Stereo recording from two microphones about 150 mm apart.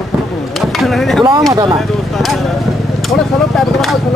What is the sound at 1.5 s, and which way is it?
Speech, 20° right (ahead or behind).